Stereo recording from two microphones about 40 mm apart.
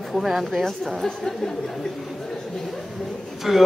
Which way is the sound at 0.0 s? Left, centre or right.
Centre.